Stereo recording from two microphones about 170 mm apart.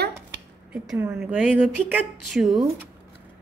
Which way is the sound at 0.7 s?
5° right (ahead or behind).